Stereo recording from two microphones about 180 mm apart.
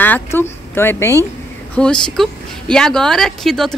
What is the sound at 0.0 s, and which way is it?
Speech, 10° left (ahead or behind).